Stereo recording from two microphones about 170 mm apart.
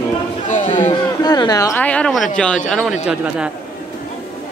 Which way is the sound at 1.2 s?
25° left (ahead or behind).